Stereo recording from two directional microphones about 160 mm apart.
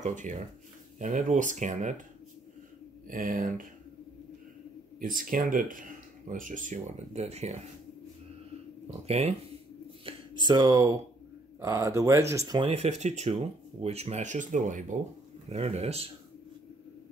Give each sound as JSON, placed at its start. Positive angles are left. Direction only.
{"t": 0.0, "sound": "speech", "side_deg": -50}
{"t": 3.1, "sound": "speech", "side_deg": -60}
{"t": 5.0, "sound": "speech", "side_deg": -60}
{"t": 8.8, "sound": "speech", "side_deg": -40}
{"t": 10.0, "sound": "speech", "side_deg": -30}
{"t": 12.7, "sound": "speech", "side_deg": -45}
{"t": 15.5, "sound": "speech", "side_deg": -40}